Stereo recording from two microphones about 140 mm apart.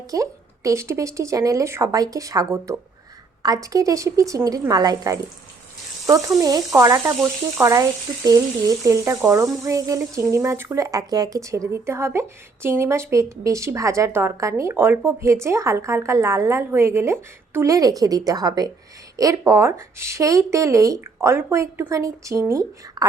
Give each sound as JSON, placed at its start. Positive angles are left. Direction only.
{"t": 0.1, "sound": "speech", "side_deg": -25}